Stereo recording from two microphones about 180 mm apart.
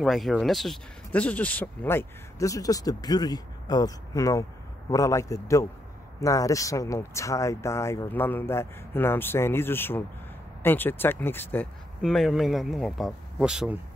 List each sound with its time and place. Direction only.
0.0 s speech: centre (ahead or behind)
12.0 s speech: centre (ahead or behind)